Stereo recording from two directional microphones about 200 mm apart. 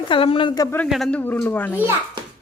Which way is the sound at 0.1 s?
25° left (ahead or behind).